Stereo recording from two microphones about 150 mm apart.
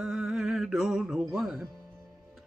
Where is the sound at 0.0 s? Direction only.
Centre (ahead or behind).